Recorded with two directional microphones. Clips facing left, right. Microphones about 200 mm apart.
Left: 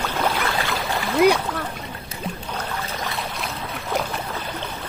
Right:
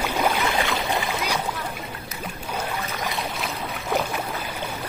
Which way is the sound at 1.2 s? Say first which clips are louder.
Left 10 dB; 50° left (ahead or behind).